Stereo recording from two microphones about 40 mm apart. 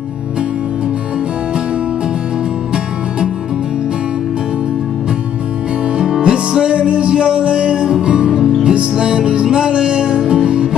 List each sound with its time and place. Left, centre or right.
5.9 s music: centre